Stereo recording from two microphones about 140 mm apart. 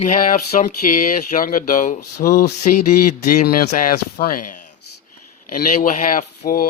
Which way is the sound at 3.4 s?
85° left.